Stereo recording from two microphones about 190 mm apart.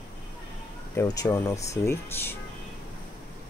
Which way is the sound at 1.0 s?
20° left (ahead or behind).